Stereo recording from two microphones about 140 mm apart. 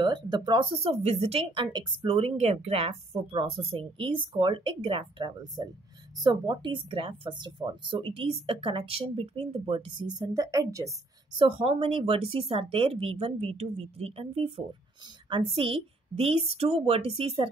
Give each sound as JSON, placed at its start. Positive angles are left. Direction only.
{"t": 0.0, "sound": "speech", "side_deg": -30}
{"t": 11.3, "sound": "speech", "side_deg": -40}